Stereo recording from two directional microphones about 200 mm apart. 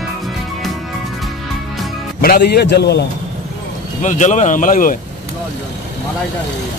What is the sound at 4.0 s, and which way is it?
Speech, 40° left (ahead or behind).